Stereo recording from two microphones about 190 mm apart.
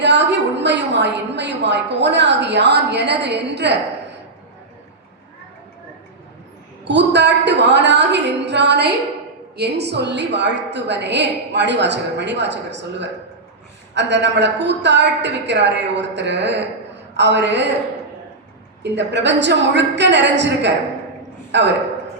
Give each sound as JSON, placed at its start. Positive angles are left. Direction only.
{"t": 0.0, "sound": "a woman's voice", "side_deg": -65}
{"t": 6.8, "sound": "a woman's voice", "side_deg": -65}
{"t": 18.8, "sound": "a woman's voice", "side_deg": -65}